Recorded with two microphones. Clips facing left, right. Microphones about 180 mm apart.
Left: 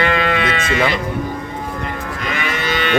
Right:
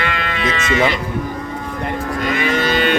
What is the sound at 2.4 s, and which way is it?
Livestock, 35° right (ahead or behind).